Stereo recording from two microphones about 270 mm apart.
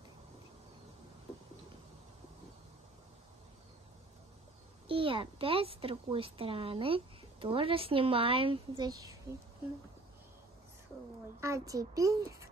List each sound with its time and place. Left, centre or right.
4.8 s a child's voice: centre
11.4 s a woman's voice: centre